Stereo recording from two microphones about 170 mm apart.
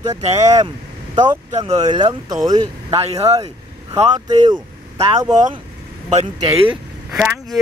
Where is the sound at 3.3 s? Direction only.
25° right (ahead or behind).